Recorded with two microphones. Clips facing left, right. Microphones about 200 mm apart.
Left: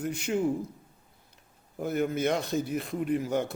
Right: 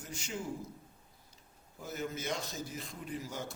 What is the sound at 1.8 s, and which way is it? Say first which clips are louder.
A man's voice: left 11 dB; 60° left (ahead or behind).